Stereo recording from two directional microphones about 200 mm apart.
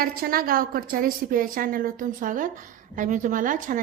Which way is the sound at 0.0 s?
45° right (ahead or behind).